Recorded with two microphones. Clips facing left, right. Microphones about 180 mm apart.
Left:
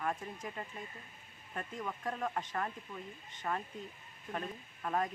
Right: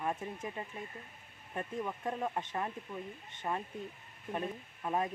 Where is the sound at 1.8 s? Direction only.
20° right (ahead or behind).